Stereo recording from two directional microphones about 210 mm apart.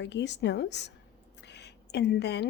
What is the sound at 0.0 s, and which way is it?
A woman's voice, 55° left (ahead or behind).